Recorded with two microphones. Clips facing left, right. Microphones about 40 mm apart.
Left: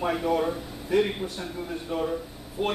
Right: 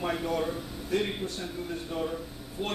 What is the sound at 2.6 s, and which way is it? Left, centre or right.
Speech, left.